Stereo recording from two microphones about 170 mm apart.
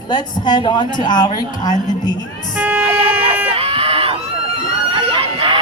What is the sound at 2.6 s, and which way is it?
Vehicle, 10° right (ahead or behind).